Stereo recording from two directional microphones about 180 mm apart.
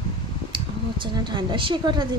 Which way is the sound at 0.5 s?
25° right (ahead or behind).